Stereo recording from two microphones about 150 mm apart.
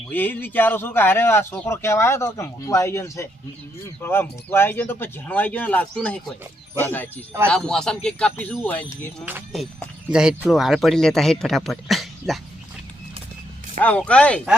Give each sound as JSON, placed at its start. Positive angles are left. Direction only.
{"t": 0.1, "sound": "a man's voice", "side_deg": 10}
{"t": 10.1, "sound": "a man's voice", "side_deg": -5}
{"t": 13.8, "sound": "a man's voice", "side_deg": 10}